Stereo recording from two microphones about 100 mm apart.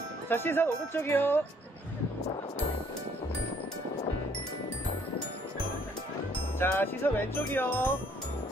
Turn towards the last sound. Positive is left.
turn(degrees=20)  # may be behind; listen again after turning